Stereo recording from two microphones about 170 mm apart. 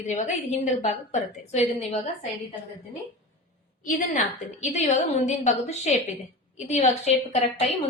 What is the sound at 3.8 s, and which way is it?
A woman's voice, 50° left (ahead or behind).